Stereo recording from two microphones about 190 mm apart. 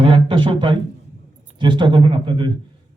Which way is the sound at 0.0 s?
25° right (ahead or behind).